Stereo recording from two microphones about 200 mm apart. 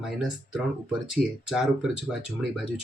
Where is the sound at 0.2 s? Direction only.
Centre (ahead or behind).